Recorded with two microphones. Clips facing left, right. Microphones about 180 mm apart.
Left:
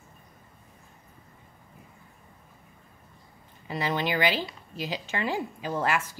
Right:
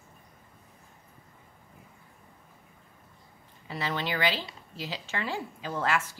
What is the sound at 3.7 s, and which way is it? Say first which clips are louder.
Speech: left 4 dB; 15° left (ahead or behind).